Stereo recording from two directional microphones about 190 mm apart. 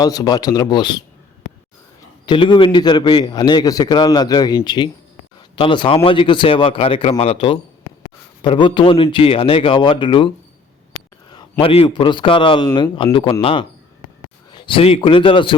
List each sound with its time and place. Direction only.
0.0 s a man's voice: 20° left (ahead or behind)
2.2 s a man's voice: 25° left (ahead or behind)
11.3 s a man's voice: 25° left (ahead or behind)